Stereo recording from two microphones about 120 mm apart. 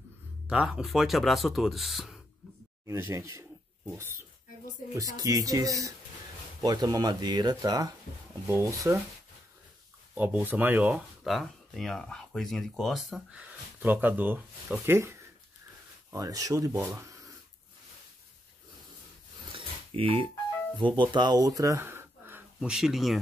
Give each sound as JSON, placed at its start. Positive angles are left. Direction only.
{"t": 0.5, "sound": "speech", "side_deg": -10}
{"t": 2.9, "sound": "speech", "side_deg": -20}
{"t": 4.9, "sound": "speech", "side_deg": -30}
{"t": 8.5, "sound": "speech", "side_deg": -25}
{"t": 10.1, "sound": "speech", "side_deg": -15}
{"t": 10.9, "sound": "speech", "side_deg": 0}
{"t": 19.5, "sound": "a sound", "side_deg": -50}
{"t": 20.9, "sound": "speech", "side_deg": -40}
{"t": 22.6, "sound": "speech", "side_deg": -5}